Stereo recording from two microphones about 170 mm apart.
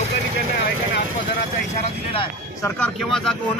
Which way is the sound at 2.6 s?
10° left (ahead or behind).